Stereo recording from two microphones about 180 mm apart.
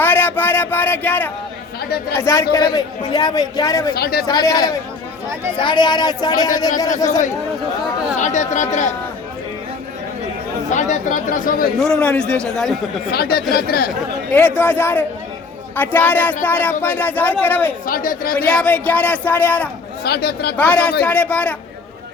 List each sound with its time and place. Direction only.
0.0 s a sound: 10° left (ahead or behind)
2.1 s a man's voice: 15° left (ahead or behind)
3.9 s speech: 60° left (ahead or behind)
4.3 s a man's voice: 20° left (ahead or behind)
8.2 s speech: 40° left (ahead or behind)
10.7 s speech: 40° left (ahead or behind)
11.8 s speech: 5° left (ahead or behind)
13.1 s speech: 60° left (ahead or behind)
14.6 s speech: 10° left (ahead or behind)
17.8 s speech: 50° left (ahead or behind)
18.3 s speech: 10° left (ahead or behind)
20.1 s speech: 60° left (ahead or behind)
20.6 s speech: 5° left (ahead or behind)